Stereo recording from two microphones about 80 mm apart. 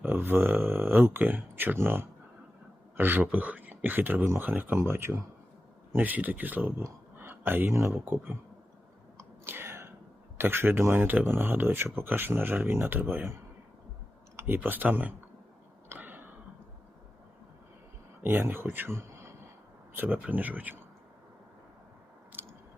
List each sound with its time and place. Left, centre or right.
0.0 s speech: right
5.9 s speech: right
9.1 s a sound: right
10.3 s speech: right
15.9 s throat clearing: right
18.2 s speech: right